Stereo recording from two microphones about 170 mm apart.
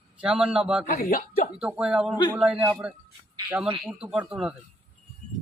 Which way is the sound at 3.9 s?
5° right (ahead or behind).